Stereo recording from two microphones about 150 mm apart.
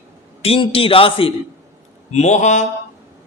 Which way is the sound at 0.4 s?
40° left (ahead or behind).